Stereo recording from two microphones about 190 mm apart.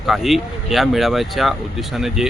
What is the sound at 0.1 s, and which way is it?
Speech, centre (ahead or behind).